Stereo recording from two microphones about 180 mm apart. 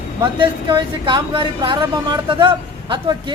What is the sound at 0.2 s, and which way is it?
Speech, 25° right (ahead or behind).